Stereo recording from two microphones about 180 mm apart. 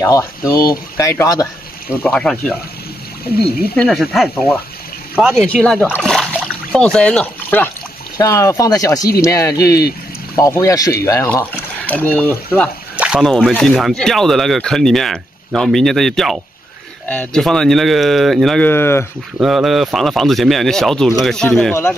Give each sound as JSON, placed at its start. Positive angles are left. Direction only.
{"t": 0.0, "sound": "speech", "side_deg": 15}
{"t": 2.0, "sound": "speech", "side_deg": 5}
{"t": 3.7, "sound": "speech", "side_deg": 5}
{"t": 12.9, "sound": "speech", "side_deg": -5}
{"t": 18.7, "sound": "speech", "side_deg": 15}
{"t": 19.3, "sound": "speech", "side_deg": 0}